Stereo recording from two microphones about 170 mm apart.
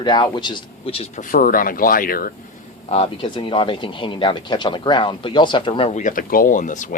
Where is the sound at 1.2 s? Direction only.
55° left (ahead or behind).